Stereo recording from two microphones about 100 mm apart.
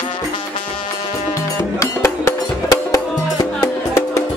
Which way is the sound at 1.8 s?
30° left (ahead or behind).